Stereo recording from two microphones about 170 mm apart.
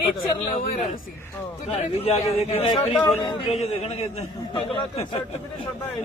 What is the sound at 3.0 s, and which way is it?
Speech, 20° left (ahead or behind).